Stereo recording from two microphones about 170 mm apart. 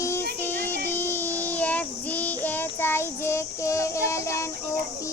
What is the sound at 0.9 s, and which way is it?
Child singing, 10° left (ahead or behind).